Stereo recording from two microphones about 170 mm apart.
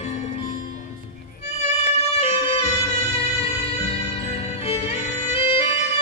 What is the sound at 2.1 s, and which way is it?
Music, 35° left (ahead or behind).